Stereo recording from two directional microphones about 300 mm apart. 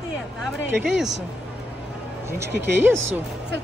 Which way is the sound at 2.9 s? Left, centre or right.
Right.